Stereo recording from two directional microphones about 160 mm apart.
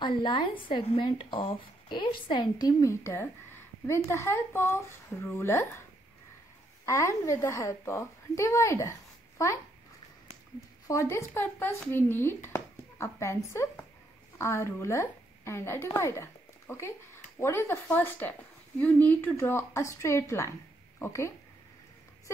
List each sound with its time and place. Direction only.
0.0 s a woman's voice: 30° left (ahead or behind)
6.9 s a woman's voice: 20° left (ahead or behind)
10.9 s a woman's voice: 20° left (ahead or behind)